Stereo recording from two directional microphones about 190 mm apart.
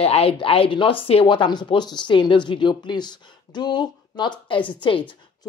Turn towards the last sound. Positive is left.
turn(degrees=25)  # may be behind; listen again after turning